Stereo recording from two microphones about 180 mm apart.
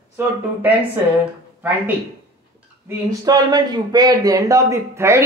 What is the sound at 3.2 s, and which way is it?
Speech, 20° right (ahead or behind).